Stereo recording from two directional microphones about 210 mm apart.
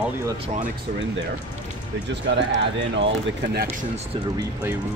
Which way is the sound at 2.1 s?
60° right (ahead or behind).